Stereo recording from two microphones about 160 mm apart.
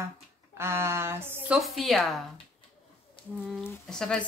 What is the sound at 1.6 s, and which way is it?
Speech, centre (ahead or behind).